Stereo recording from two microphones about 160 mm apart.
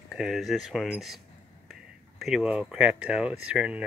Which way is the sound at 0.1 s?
Centre (ahead or behind).